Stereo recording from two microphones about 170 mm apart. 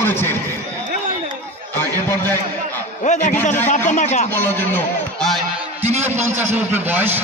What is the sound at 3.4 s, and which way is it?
Speech, 10° left (ahead or behind).